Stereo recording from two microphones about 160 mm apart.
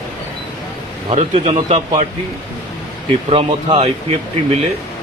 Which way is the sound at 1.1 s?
40° right (ahead or behind).